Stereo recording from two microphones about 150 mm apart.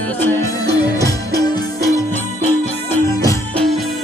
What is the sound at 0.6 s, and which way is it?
Music, 25° left (ahead or behind).